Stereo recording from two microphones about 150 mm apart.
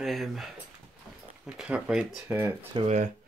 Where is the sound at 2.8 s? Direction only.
50° right (ahead or behind).